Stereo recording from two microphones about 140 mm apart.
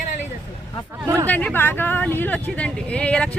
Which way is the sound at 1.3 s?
10° left (ahead or behind).